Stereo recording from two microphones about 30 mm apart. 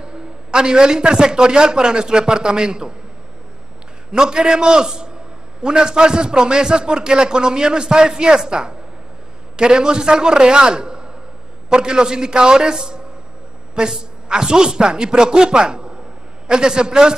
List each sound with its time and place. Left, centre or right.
0.0 s a man's voice: right
4.1 s a man's voice: right